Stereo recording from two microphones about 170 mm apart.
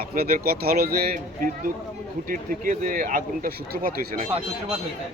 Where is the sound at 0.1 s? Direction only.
60° right (ahead or behind).